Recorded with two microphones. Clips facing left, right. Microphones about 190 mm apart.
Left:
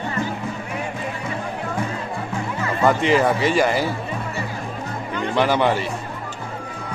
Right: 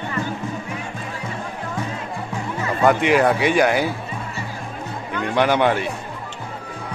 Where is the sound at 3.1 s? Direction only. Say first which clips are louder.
Right 1 dB; centre (ahead or behind).